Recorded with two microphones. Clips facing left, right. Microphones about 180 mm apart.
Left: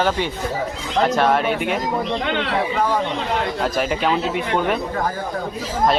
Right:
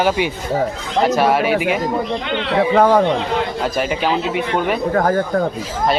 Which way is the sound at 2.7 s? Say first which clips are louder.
Right 8 dB; 60° right (ahead or behind).